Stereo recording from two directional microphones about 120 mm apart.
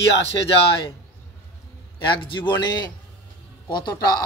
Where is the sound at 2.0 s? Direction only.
45° left (ahead or behind).